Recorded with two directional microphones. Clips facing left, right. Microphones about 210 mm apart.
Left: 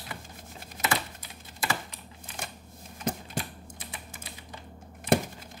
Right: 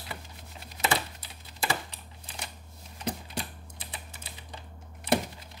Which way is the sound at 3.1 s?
50° left (ahead or behind).